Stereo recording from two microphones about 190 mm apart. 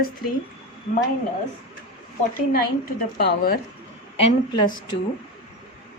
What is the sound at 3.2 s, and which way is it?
Speech, 55° left (ahead or behind).